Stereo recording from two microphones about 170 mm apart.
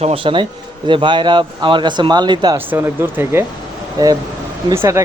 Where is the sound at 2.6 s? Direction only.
10° right (ahead or behind).